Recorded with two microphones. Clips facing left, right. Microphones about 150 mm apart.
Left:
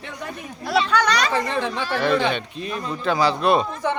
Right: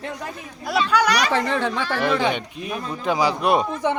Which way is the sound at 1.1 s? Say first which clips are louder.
Right 1 dB; 75° right (ahead or behind).